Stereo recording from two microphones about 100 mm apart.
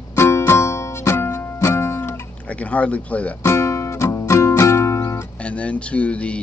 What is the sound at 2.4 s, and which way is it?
Speech, 15° left (ahead or behind).